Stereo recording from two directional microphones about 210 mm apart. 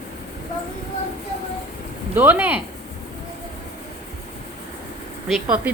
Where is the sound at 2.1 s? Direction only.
10° right (ahead or behind).